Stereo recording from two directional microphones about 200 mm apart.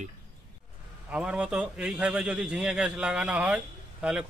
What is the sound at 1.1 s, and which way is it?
A man's voice, 5° right (ahead or behind).